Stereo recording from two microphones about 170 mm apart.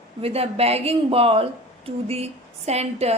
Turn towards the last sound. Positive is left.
turn(degrees=-40)  # may be behind; listen again after turning